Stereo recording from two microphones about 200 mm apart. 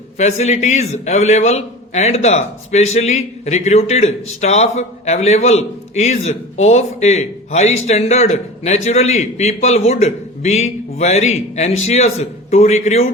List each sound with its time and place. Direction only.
0.2 s a man's voice: 35° left (ahead or behind)